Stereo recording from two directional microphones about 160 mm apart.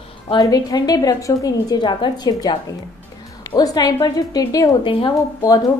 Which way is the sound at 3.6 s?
25° left (ahead or behind).